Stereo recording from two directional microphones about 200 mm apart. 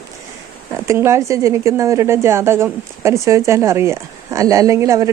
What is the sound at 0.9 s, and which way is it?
A woman's voice, 15° right (ahead or behind).